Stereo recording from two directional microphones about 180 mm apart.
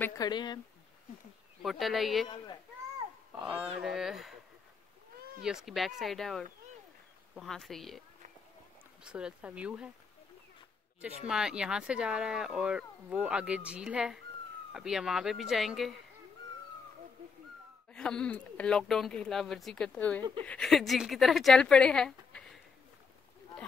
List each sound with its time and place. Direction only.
0.2 s speech: 25° left (ahead or behind)
1.6 s speech: centre (ahead or behind)
3.3 s speech: 5° right (ahead or behind)
5.4 s speech: 5° right (ahead or behind)
9.0 s speech: 5° right (ahead or behind)
11.2 s speech: 5° right (ahead or behind)
17.9 s speech: 5° left (ahead or behind)